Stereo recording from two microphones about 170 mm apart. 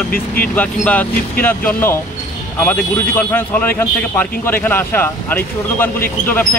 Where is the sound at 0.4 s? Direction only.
10° left (ahead or behind).